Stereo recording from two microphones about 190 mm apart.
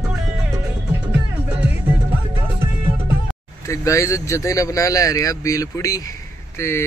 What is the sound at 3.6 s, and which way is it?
Speech, 15° left (ahead or behind).